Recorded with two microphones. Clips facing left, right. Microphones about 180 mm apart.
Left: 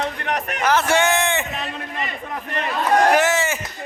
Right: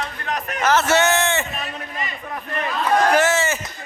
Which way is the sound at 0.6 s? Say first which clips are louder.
Right 1 dB; 10° left (ahead or behind).